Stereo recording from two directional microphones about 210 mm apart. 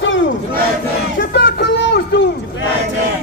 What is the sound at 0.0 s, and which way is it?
Battle cry, 65° left (ahead or behind).